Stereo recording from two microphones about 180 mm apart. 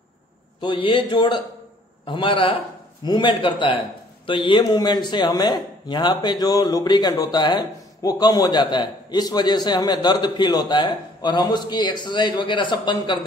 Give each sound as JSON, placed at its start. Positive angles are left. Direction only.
{"t": 0.6, "sound": "speech", "side_deg": 25}